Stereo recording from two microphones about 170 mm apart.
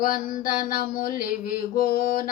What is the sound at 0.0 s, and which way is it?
Mantra, 55° left (ahead or behind).